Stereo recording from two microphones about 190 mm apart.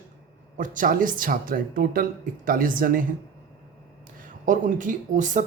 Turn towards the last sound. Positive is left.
turn(degrees=-40)  # may be behind; listen again after turning